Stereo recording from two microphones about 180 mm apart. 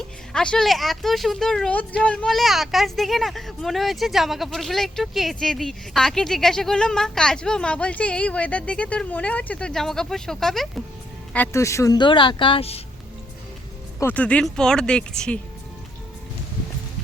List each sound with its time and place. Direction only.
0.3 s speech: 5° left (ahead or behind)
11.3 s speech: 15° left (ahead or behind); by 12.8 s 35° left (ahead or behind)
14.0 s speech: 10° left (ahead or behind)